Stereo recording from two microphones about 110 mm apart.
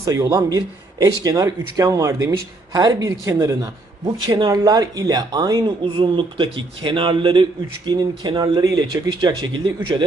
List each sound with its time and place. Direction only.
0.0 s speech: 30° right (ahead or behind)
4.0 s speech: 45° right (ahead or behind)
5.8 s a man's voice: 50° right (ahead or behind)